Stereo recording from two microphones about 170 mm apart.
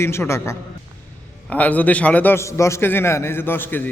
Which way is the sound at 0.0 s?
15° left (ahead or behind).